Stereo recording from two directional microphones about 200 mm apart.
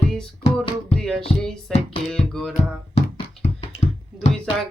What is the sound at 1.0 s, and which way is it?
Music, 5° left (ahead or behind).